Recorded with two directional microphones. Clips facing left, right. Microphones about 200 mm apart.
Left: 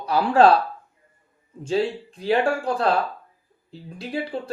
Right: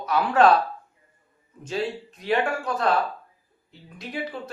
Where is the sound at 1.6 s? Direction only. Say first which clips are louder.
Left 5 dB; 30° left (ahead or behind).